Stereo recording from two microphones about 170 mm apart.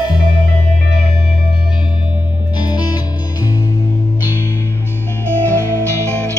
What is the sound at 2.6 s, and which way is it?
Music, 25° left (ahead or behind).